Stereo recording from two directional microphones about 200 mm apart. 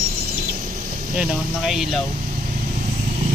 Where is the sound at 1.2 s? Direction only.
Centre (ahead or behind).